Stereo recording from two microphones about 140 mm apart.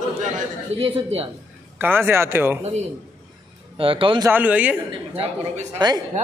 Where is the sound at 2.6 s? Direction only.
55° right (ahead or behind).